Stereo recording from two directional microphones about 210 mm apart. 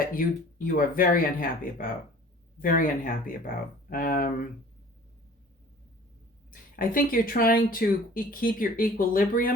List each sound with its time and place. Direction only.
0.0 s speech: 40° left (ahead or behind)
6.5 s speech: 40° left (ahead or behind)